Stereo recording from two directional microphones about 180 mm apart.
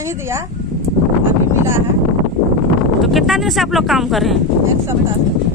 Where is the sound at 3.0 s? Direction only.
Centre (ahead or behind).